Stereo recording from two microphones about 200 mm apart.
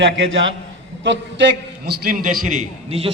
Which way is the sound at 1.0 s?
65° right (ahead or behind).